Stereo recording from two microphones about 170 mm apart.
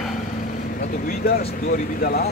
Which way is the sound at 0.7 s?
60° left (ahead or behind).